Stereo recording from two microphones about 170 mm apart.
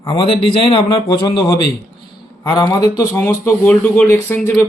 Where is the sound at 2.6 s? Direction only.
20° left (ahead or behind).